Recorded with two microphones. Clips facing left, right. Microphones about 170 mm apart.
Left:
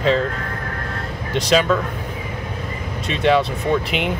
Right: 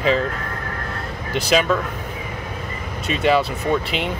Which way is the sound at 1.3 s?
5° right (ahead or behind).